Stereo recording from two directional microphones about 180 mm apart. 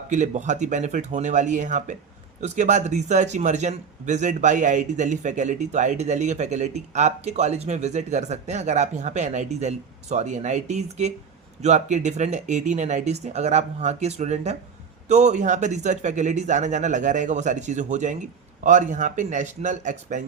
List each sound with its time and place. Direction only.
0.1 s a man's voice: 40° right (ahead or behind)